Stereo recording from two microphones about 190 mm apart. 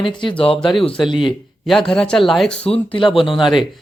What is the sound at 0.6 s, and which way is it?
Speech, centre (ahead or behind).